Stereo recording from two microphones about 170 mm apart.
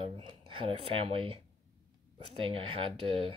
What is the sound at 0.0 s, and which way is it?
Speech, 30° right (ahead or behind).